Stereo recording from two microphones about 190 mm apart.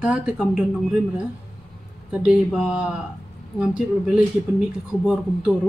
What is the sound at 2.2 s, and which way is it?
Speech, 5° right (ahead or behind).